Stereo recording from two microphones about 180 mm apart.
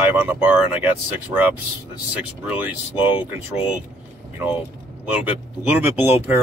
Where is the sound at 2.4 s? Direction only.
10° right (ahead or behind).